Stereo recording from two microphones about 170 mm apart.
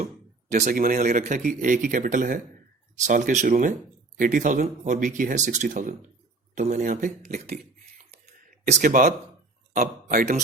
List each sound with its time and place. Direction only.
0.5 s speech: 50° right (ahead or behind)